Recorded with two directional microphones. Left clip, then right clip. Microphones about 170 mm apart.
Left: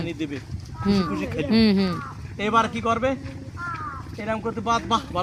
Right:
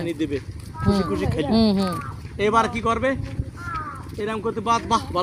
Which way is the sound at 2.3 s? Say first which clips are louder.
Right 2 dB; 25° left (ahead or behind).